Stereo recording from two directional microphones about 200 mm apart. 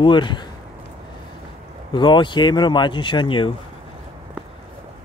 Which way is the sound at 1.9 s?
25° left (ahead or behind).